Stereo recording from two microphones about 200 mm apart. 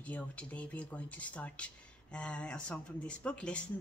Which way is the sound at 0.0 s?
5° left (ahead or behind).